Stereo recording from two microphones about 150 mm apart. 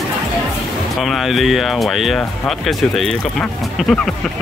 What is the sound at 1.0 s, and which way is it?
Speech, centre (ahead or behind).